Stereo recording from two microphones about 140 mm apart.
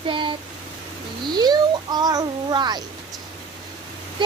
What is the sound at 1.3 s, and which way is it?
A child's voice, 30° right (ahead or behind).